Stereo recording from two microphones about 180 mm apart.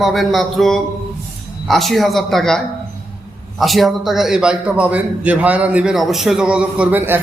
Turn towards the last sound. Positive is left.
turn(degrees=-10)  # may be behind; listen again after turning